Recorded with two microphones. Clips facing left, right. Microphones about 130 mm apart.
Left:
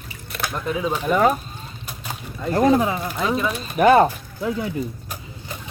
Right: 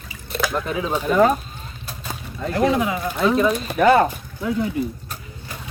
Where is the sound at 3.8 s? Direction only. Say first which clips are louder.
Even; 15° left (ahead or behind).